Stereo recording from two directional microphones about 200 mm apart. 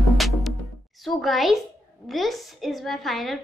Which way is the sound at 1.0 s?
Centre (ahead or behind).